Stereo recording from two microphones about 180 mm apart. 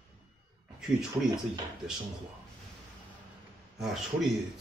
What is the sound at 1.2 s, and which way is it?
Speech, 15° right (ahead or behind).